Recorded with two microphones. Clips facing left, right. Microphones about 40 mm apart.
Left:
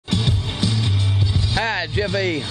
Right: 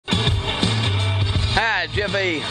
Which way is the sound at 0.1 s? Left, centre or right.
Right.